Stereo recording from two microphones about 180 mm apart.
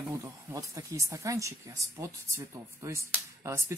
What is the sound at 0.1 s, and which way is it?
Speech, 15° right (ahead or behind).